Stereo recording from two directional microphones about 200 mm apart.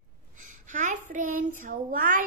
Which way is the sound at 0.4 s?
40° right (ahead or behind).